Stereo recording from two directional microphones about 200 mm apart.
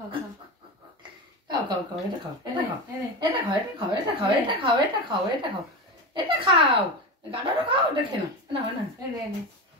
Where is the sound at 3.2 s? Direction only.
25° right (ahead or behind).